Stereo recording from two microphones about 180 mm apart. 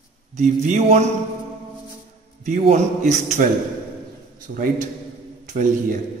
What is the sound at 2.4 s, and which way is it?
Speech, 45° right (ahead or behind).